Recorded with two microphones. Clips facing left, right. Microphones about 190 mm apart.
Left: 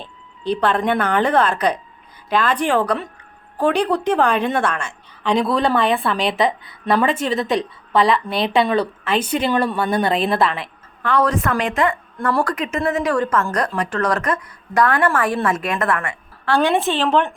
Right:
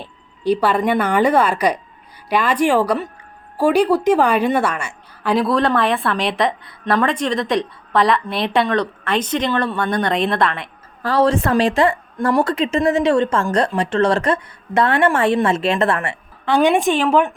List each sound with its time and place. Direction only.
0.0 s a woman's voice: 10° right (ahead or behind)
11.0 s a woman's voice: 30° right (ahead or behind)
16.6 s speech: 15° right (ahead or behind)